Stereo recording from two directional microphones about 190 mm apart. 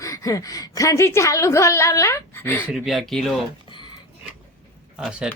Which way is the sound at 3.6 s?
25° left (ahead or behind).